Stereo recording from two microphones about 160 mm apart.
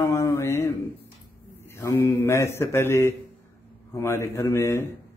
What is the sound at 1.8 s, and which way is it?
A man's voice, 15° left (ahead or behind).